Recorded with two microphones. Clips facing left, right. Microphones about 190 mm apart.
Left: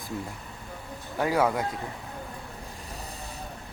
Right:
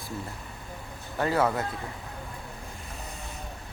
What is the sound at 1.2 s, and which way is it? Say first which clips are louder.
Speech: left 1 dB; 10° left (ahead or behind).